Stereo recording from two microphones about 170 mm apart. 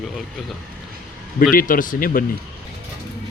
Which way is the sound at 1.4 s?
55° left (ahead or behind).